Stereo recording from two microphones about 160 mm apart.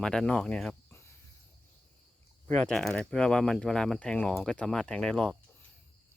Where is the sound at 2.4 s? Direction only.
5° left (ahead or behind).